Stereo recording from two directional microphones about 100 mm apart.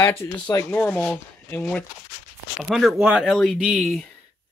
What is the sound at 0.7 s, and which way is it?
Speech, 15° left (ahead or behind).